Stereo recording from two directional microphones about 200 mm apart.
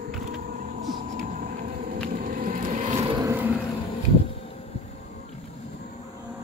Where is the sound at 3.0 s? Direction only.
15° right (ahead or behind).